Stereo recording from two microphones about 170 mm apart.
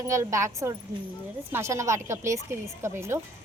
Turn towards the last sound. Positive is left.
turn(degrees=-15)  # may be behind; listen again after turning